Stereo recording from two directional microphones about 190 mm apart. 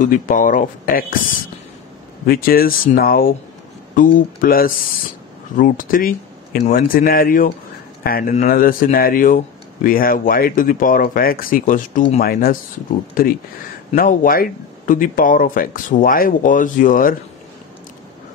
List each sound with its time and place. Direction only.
0.0 s speech: 45° left (ahead or behind)
2.2 s speech: 50° left (ahead or behind)